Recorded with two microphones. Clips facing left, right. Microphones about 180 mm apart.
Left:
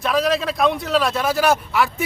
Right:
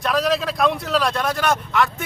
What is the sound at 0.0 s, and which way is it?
A man's voice, centre (ahead or behind).